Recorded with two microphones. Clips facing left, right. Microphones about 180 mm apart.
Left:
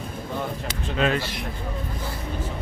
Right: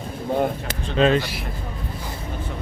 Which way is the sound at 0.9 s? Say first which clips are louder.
Right 6 dB; 30° right (ahead or behind).